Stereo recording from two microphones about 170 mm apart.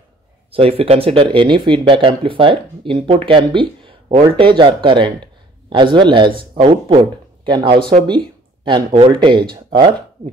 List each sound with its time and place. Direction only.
0.5 s speech: 35° right (ahead or behind)